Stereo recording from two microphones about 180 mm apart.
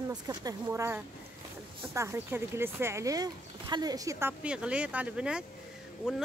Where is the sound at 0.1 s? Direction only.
20° right (ahead or behind).